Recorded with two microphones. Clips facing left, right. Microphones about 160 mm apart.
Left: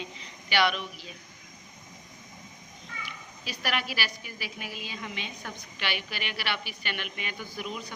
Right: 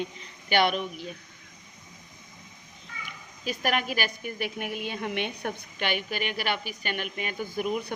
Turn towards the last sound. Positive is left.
turn(degrees=-50)  # may be behind; listen again after turning